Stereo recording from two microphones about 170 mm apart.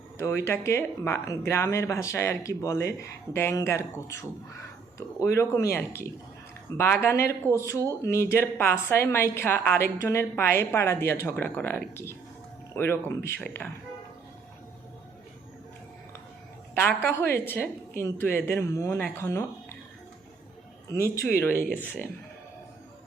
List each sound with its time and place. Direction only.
0.2 s a woman's voice: 15° left (ahead or behind)
17.0 s a woman's voice: 15° left (ahead or behind)
20.9 s a woman's voice: 15° left (ahead or behind)